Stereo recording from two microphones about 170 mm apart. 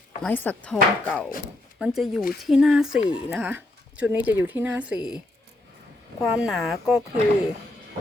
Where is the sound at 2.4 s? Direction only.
Centre (ahead or behind).